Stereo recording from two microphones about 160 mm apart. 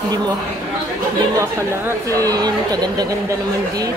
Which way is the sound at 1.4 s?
20° right (ahead or behind).